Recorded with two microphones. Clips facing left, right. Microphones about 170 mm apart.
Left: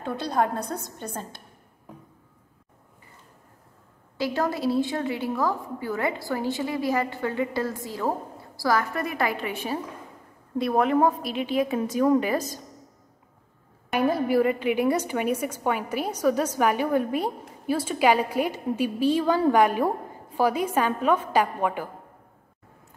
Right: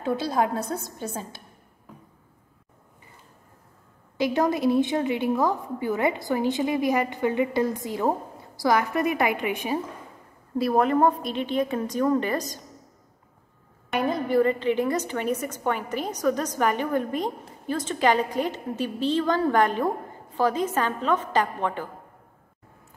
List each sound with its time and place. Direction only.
0.0 s a woman's voice: 5° right (ahead or behind)
4.2 s a woman's voice: 20° right (ahead or behind)
10.6 s a woman's voice: centre (ahead or behind)
13.8 s a woman's voice: 5° left (ahead or behind)